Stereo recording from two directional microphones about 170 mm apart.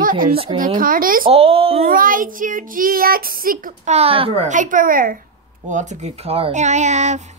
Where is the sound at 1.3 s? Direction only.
35° right (ahead or behind).